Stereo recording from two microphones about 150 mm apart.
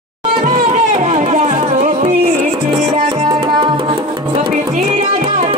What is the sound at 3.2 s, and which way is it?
Tabla, 25° right (ahead or behind).